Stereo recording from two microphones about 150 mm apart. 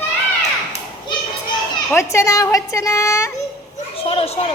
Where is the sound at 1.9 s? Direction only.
20° left (ahead or behind).